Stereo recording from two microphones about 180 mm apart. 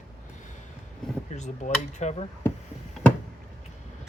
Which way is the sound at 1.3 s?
40° left (ahead or behind).